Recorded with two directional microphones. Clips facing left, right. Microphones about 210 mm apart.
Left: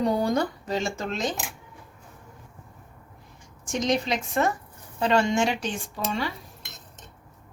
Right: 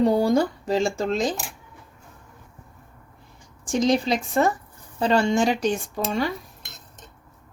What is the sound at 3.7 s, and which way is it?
Speech, 30° right (ahead or behind).